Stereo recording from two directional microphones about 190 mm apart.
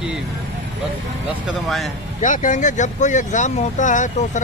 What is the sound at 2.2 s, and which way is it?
Speech, 45° left (ahead or behind).